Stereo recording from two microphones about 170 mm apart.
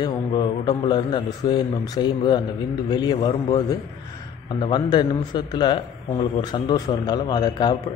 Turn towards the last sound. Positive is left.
turn(degrees=25)  # may be behind; listen again after turning